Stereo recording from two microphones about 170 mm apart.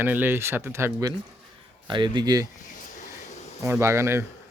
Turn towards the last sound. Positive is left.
turn(degrees=-15)  # may be behind; listen again after turning